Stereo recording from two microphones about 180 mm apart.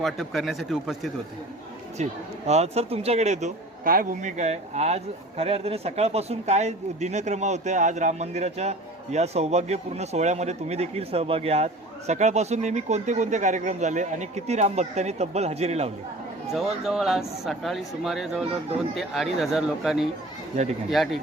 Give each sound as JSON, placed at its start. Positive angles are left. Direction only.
{"t": 0.0, "sound": "speech", "side_deg": 0}
{"t": 2.0, "sound": "speech", "side_deg": -40}
{"t": 16.8, "sound": "speech", "side_deg": 0}